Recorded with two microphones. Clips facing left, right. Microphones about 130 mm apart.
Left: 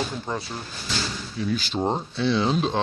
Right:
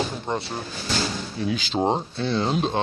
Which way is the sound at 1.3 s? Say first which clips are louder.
Left 1 dB; 75° right (ahead or behind).